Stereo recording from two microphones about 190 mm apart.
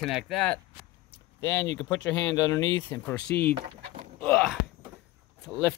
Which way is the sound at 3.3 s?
55° left (ahead or behind).